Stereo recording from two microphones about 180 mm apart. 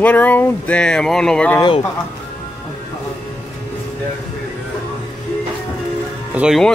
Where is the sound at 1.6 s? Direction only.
20° left (ahead or behind).